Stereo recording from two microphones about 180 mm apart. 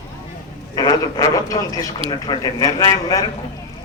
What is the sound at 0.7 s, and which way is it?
A man's voice, 20° left (ahead or behind).